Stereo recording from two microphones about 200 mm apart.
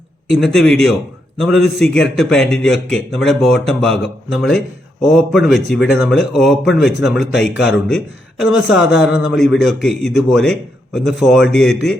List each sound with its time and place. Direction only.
0.3 s speech: centre (ahead or behind)